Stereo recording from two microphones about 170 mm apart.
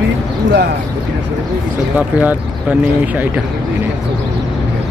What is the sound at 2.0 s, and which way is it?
Speech, 10° right (ahead or behind).